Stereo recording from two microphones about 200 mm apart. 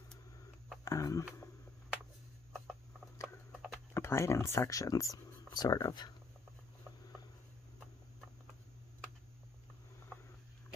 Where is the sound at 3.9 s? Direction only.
10° left (ahead or behind).